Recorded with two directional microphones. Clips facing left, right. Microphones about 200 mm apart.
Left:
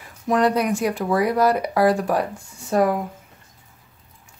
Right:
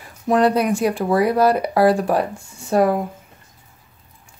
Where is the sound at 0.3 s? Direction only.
30° right (ahead or behind).